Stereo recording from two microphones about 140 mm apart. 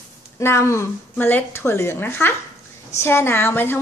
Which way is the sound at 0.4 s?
15° left (ahead or behind).